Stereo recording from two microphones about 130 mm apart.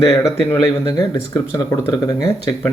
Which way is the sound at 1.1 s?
25° left (ahead or behind).